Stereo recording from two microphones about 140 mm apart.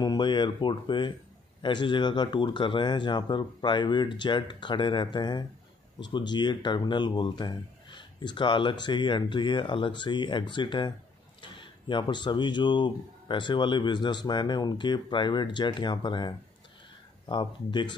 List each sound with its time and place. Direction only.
0.0 s speech: 30° left (ahead or behind)